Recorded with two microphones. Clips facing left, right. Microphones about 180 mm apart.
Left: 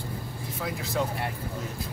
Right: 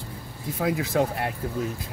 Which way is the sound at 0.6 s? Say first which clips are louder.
Right 7 dB; 60° right (ahead or behind).